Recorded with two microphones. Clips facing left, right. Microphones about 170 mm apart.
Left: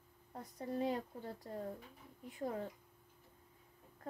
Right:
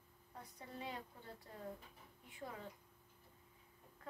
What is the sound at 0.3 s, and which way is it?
Speech, 40° left (ahead or behind).